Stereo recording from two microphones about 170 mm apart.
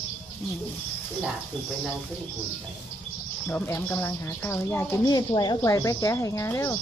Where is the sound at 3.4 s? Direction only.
10° left (ahead or behind).